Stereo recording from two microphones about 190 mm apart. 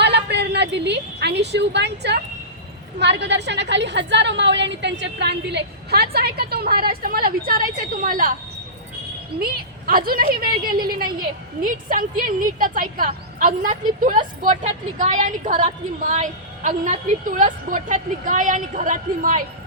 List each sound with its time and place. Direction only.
0.0 s a woman's voice: 65° right (ahead or behind); by 8.3 s 45° right (ahead or behind)
9.4 s a woman's voice: 50° right (ahead or behind)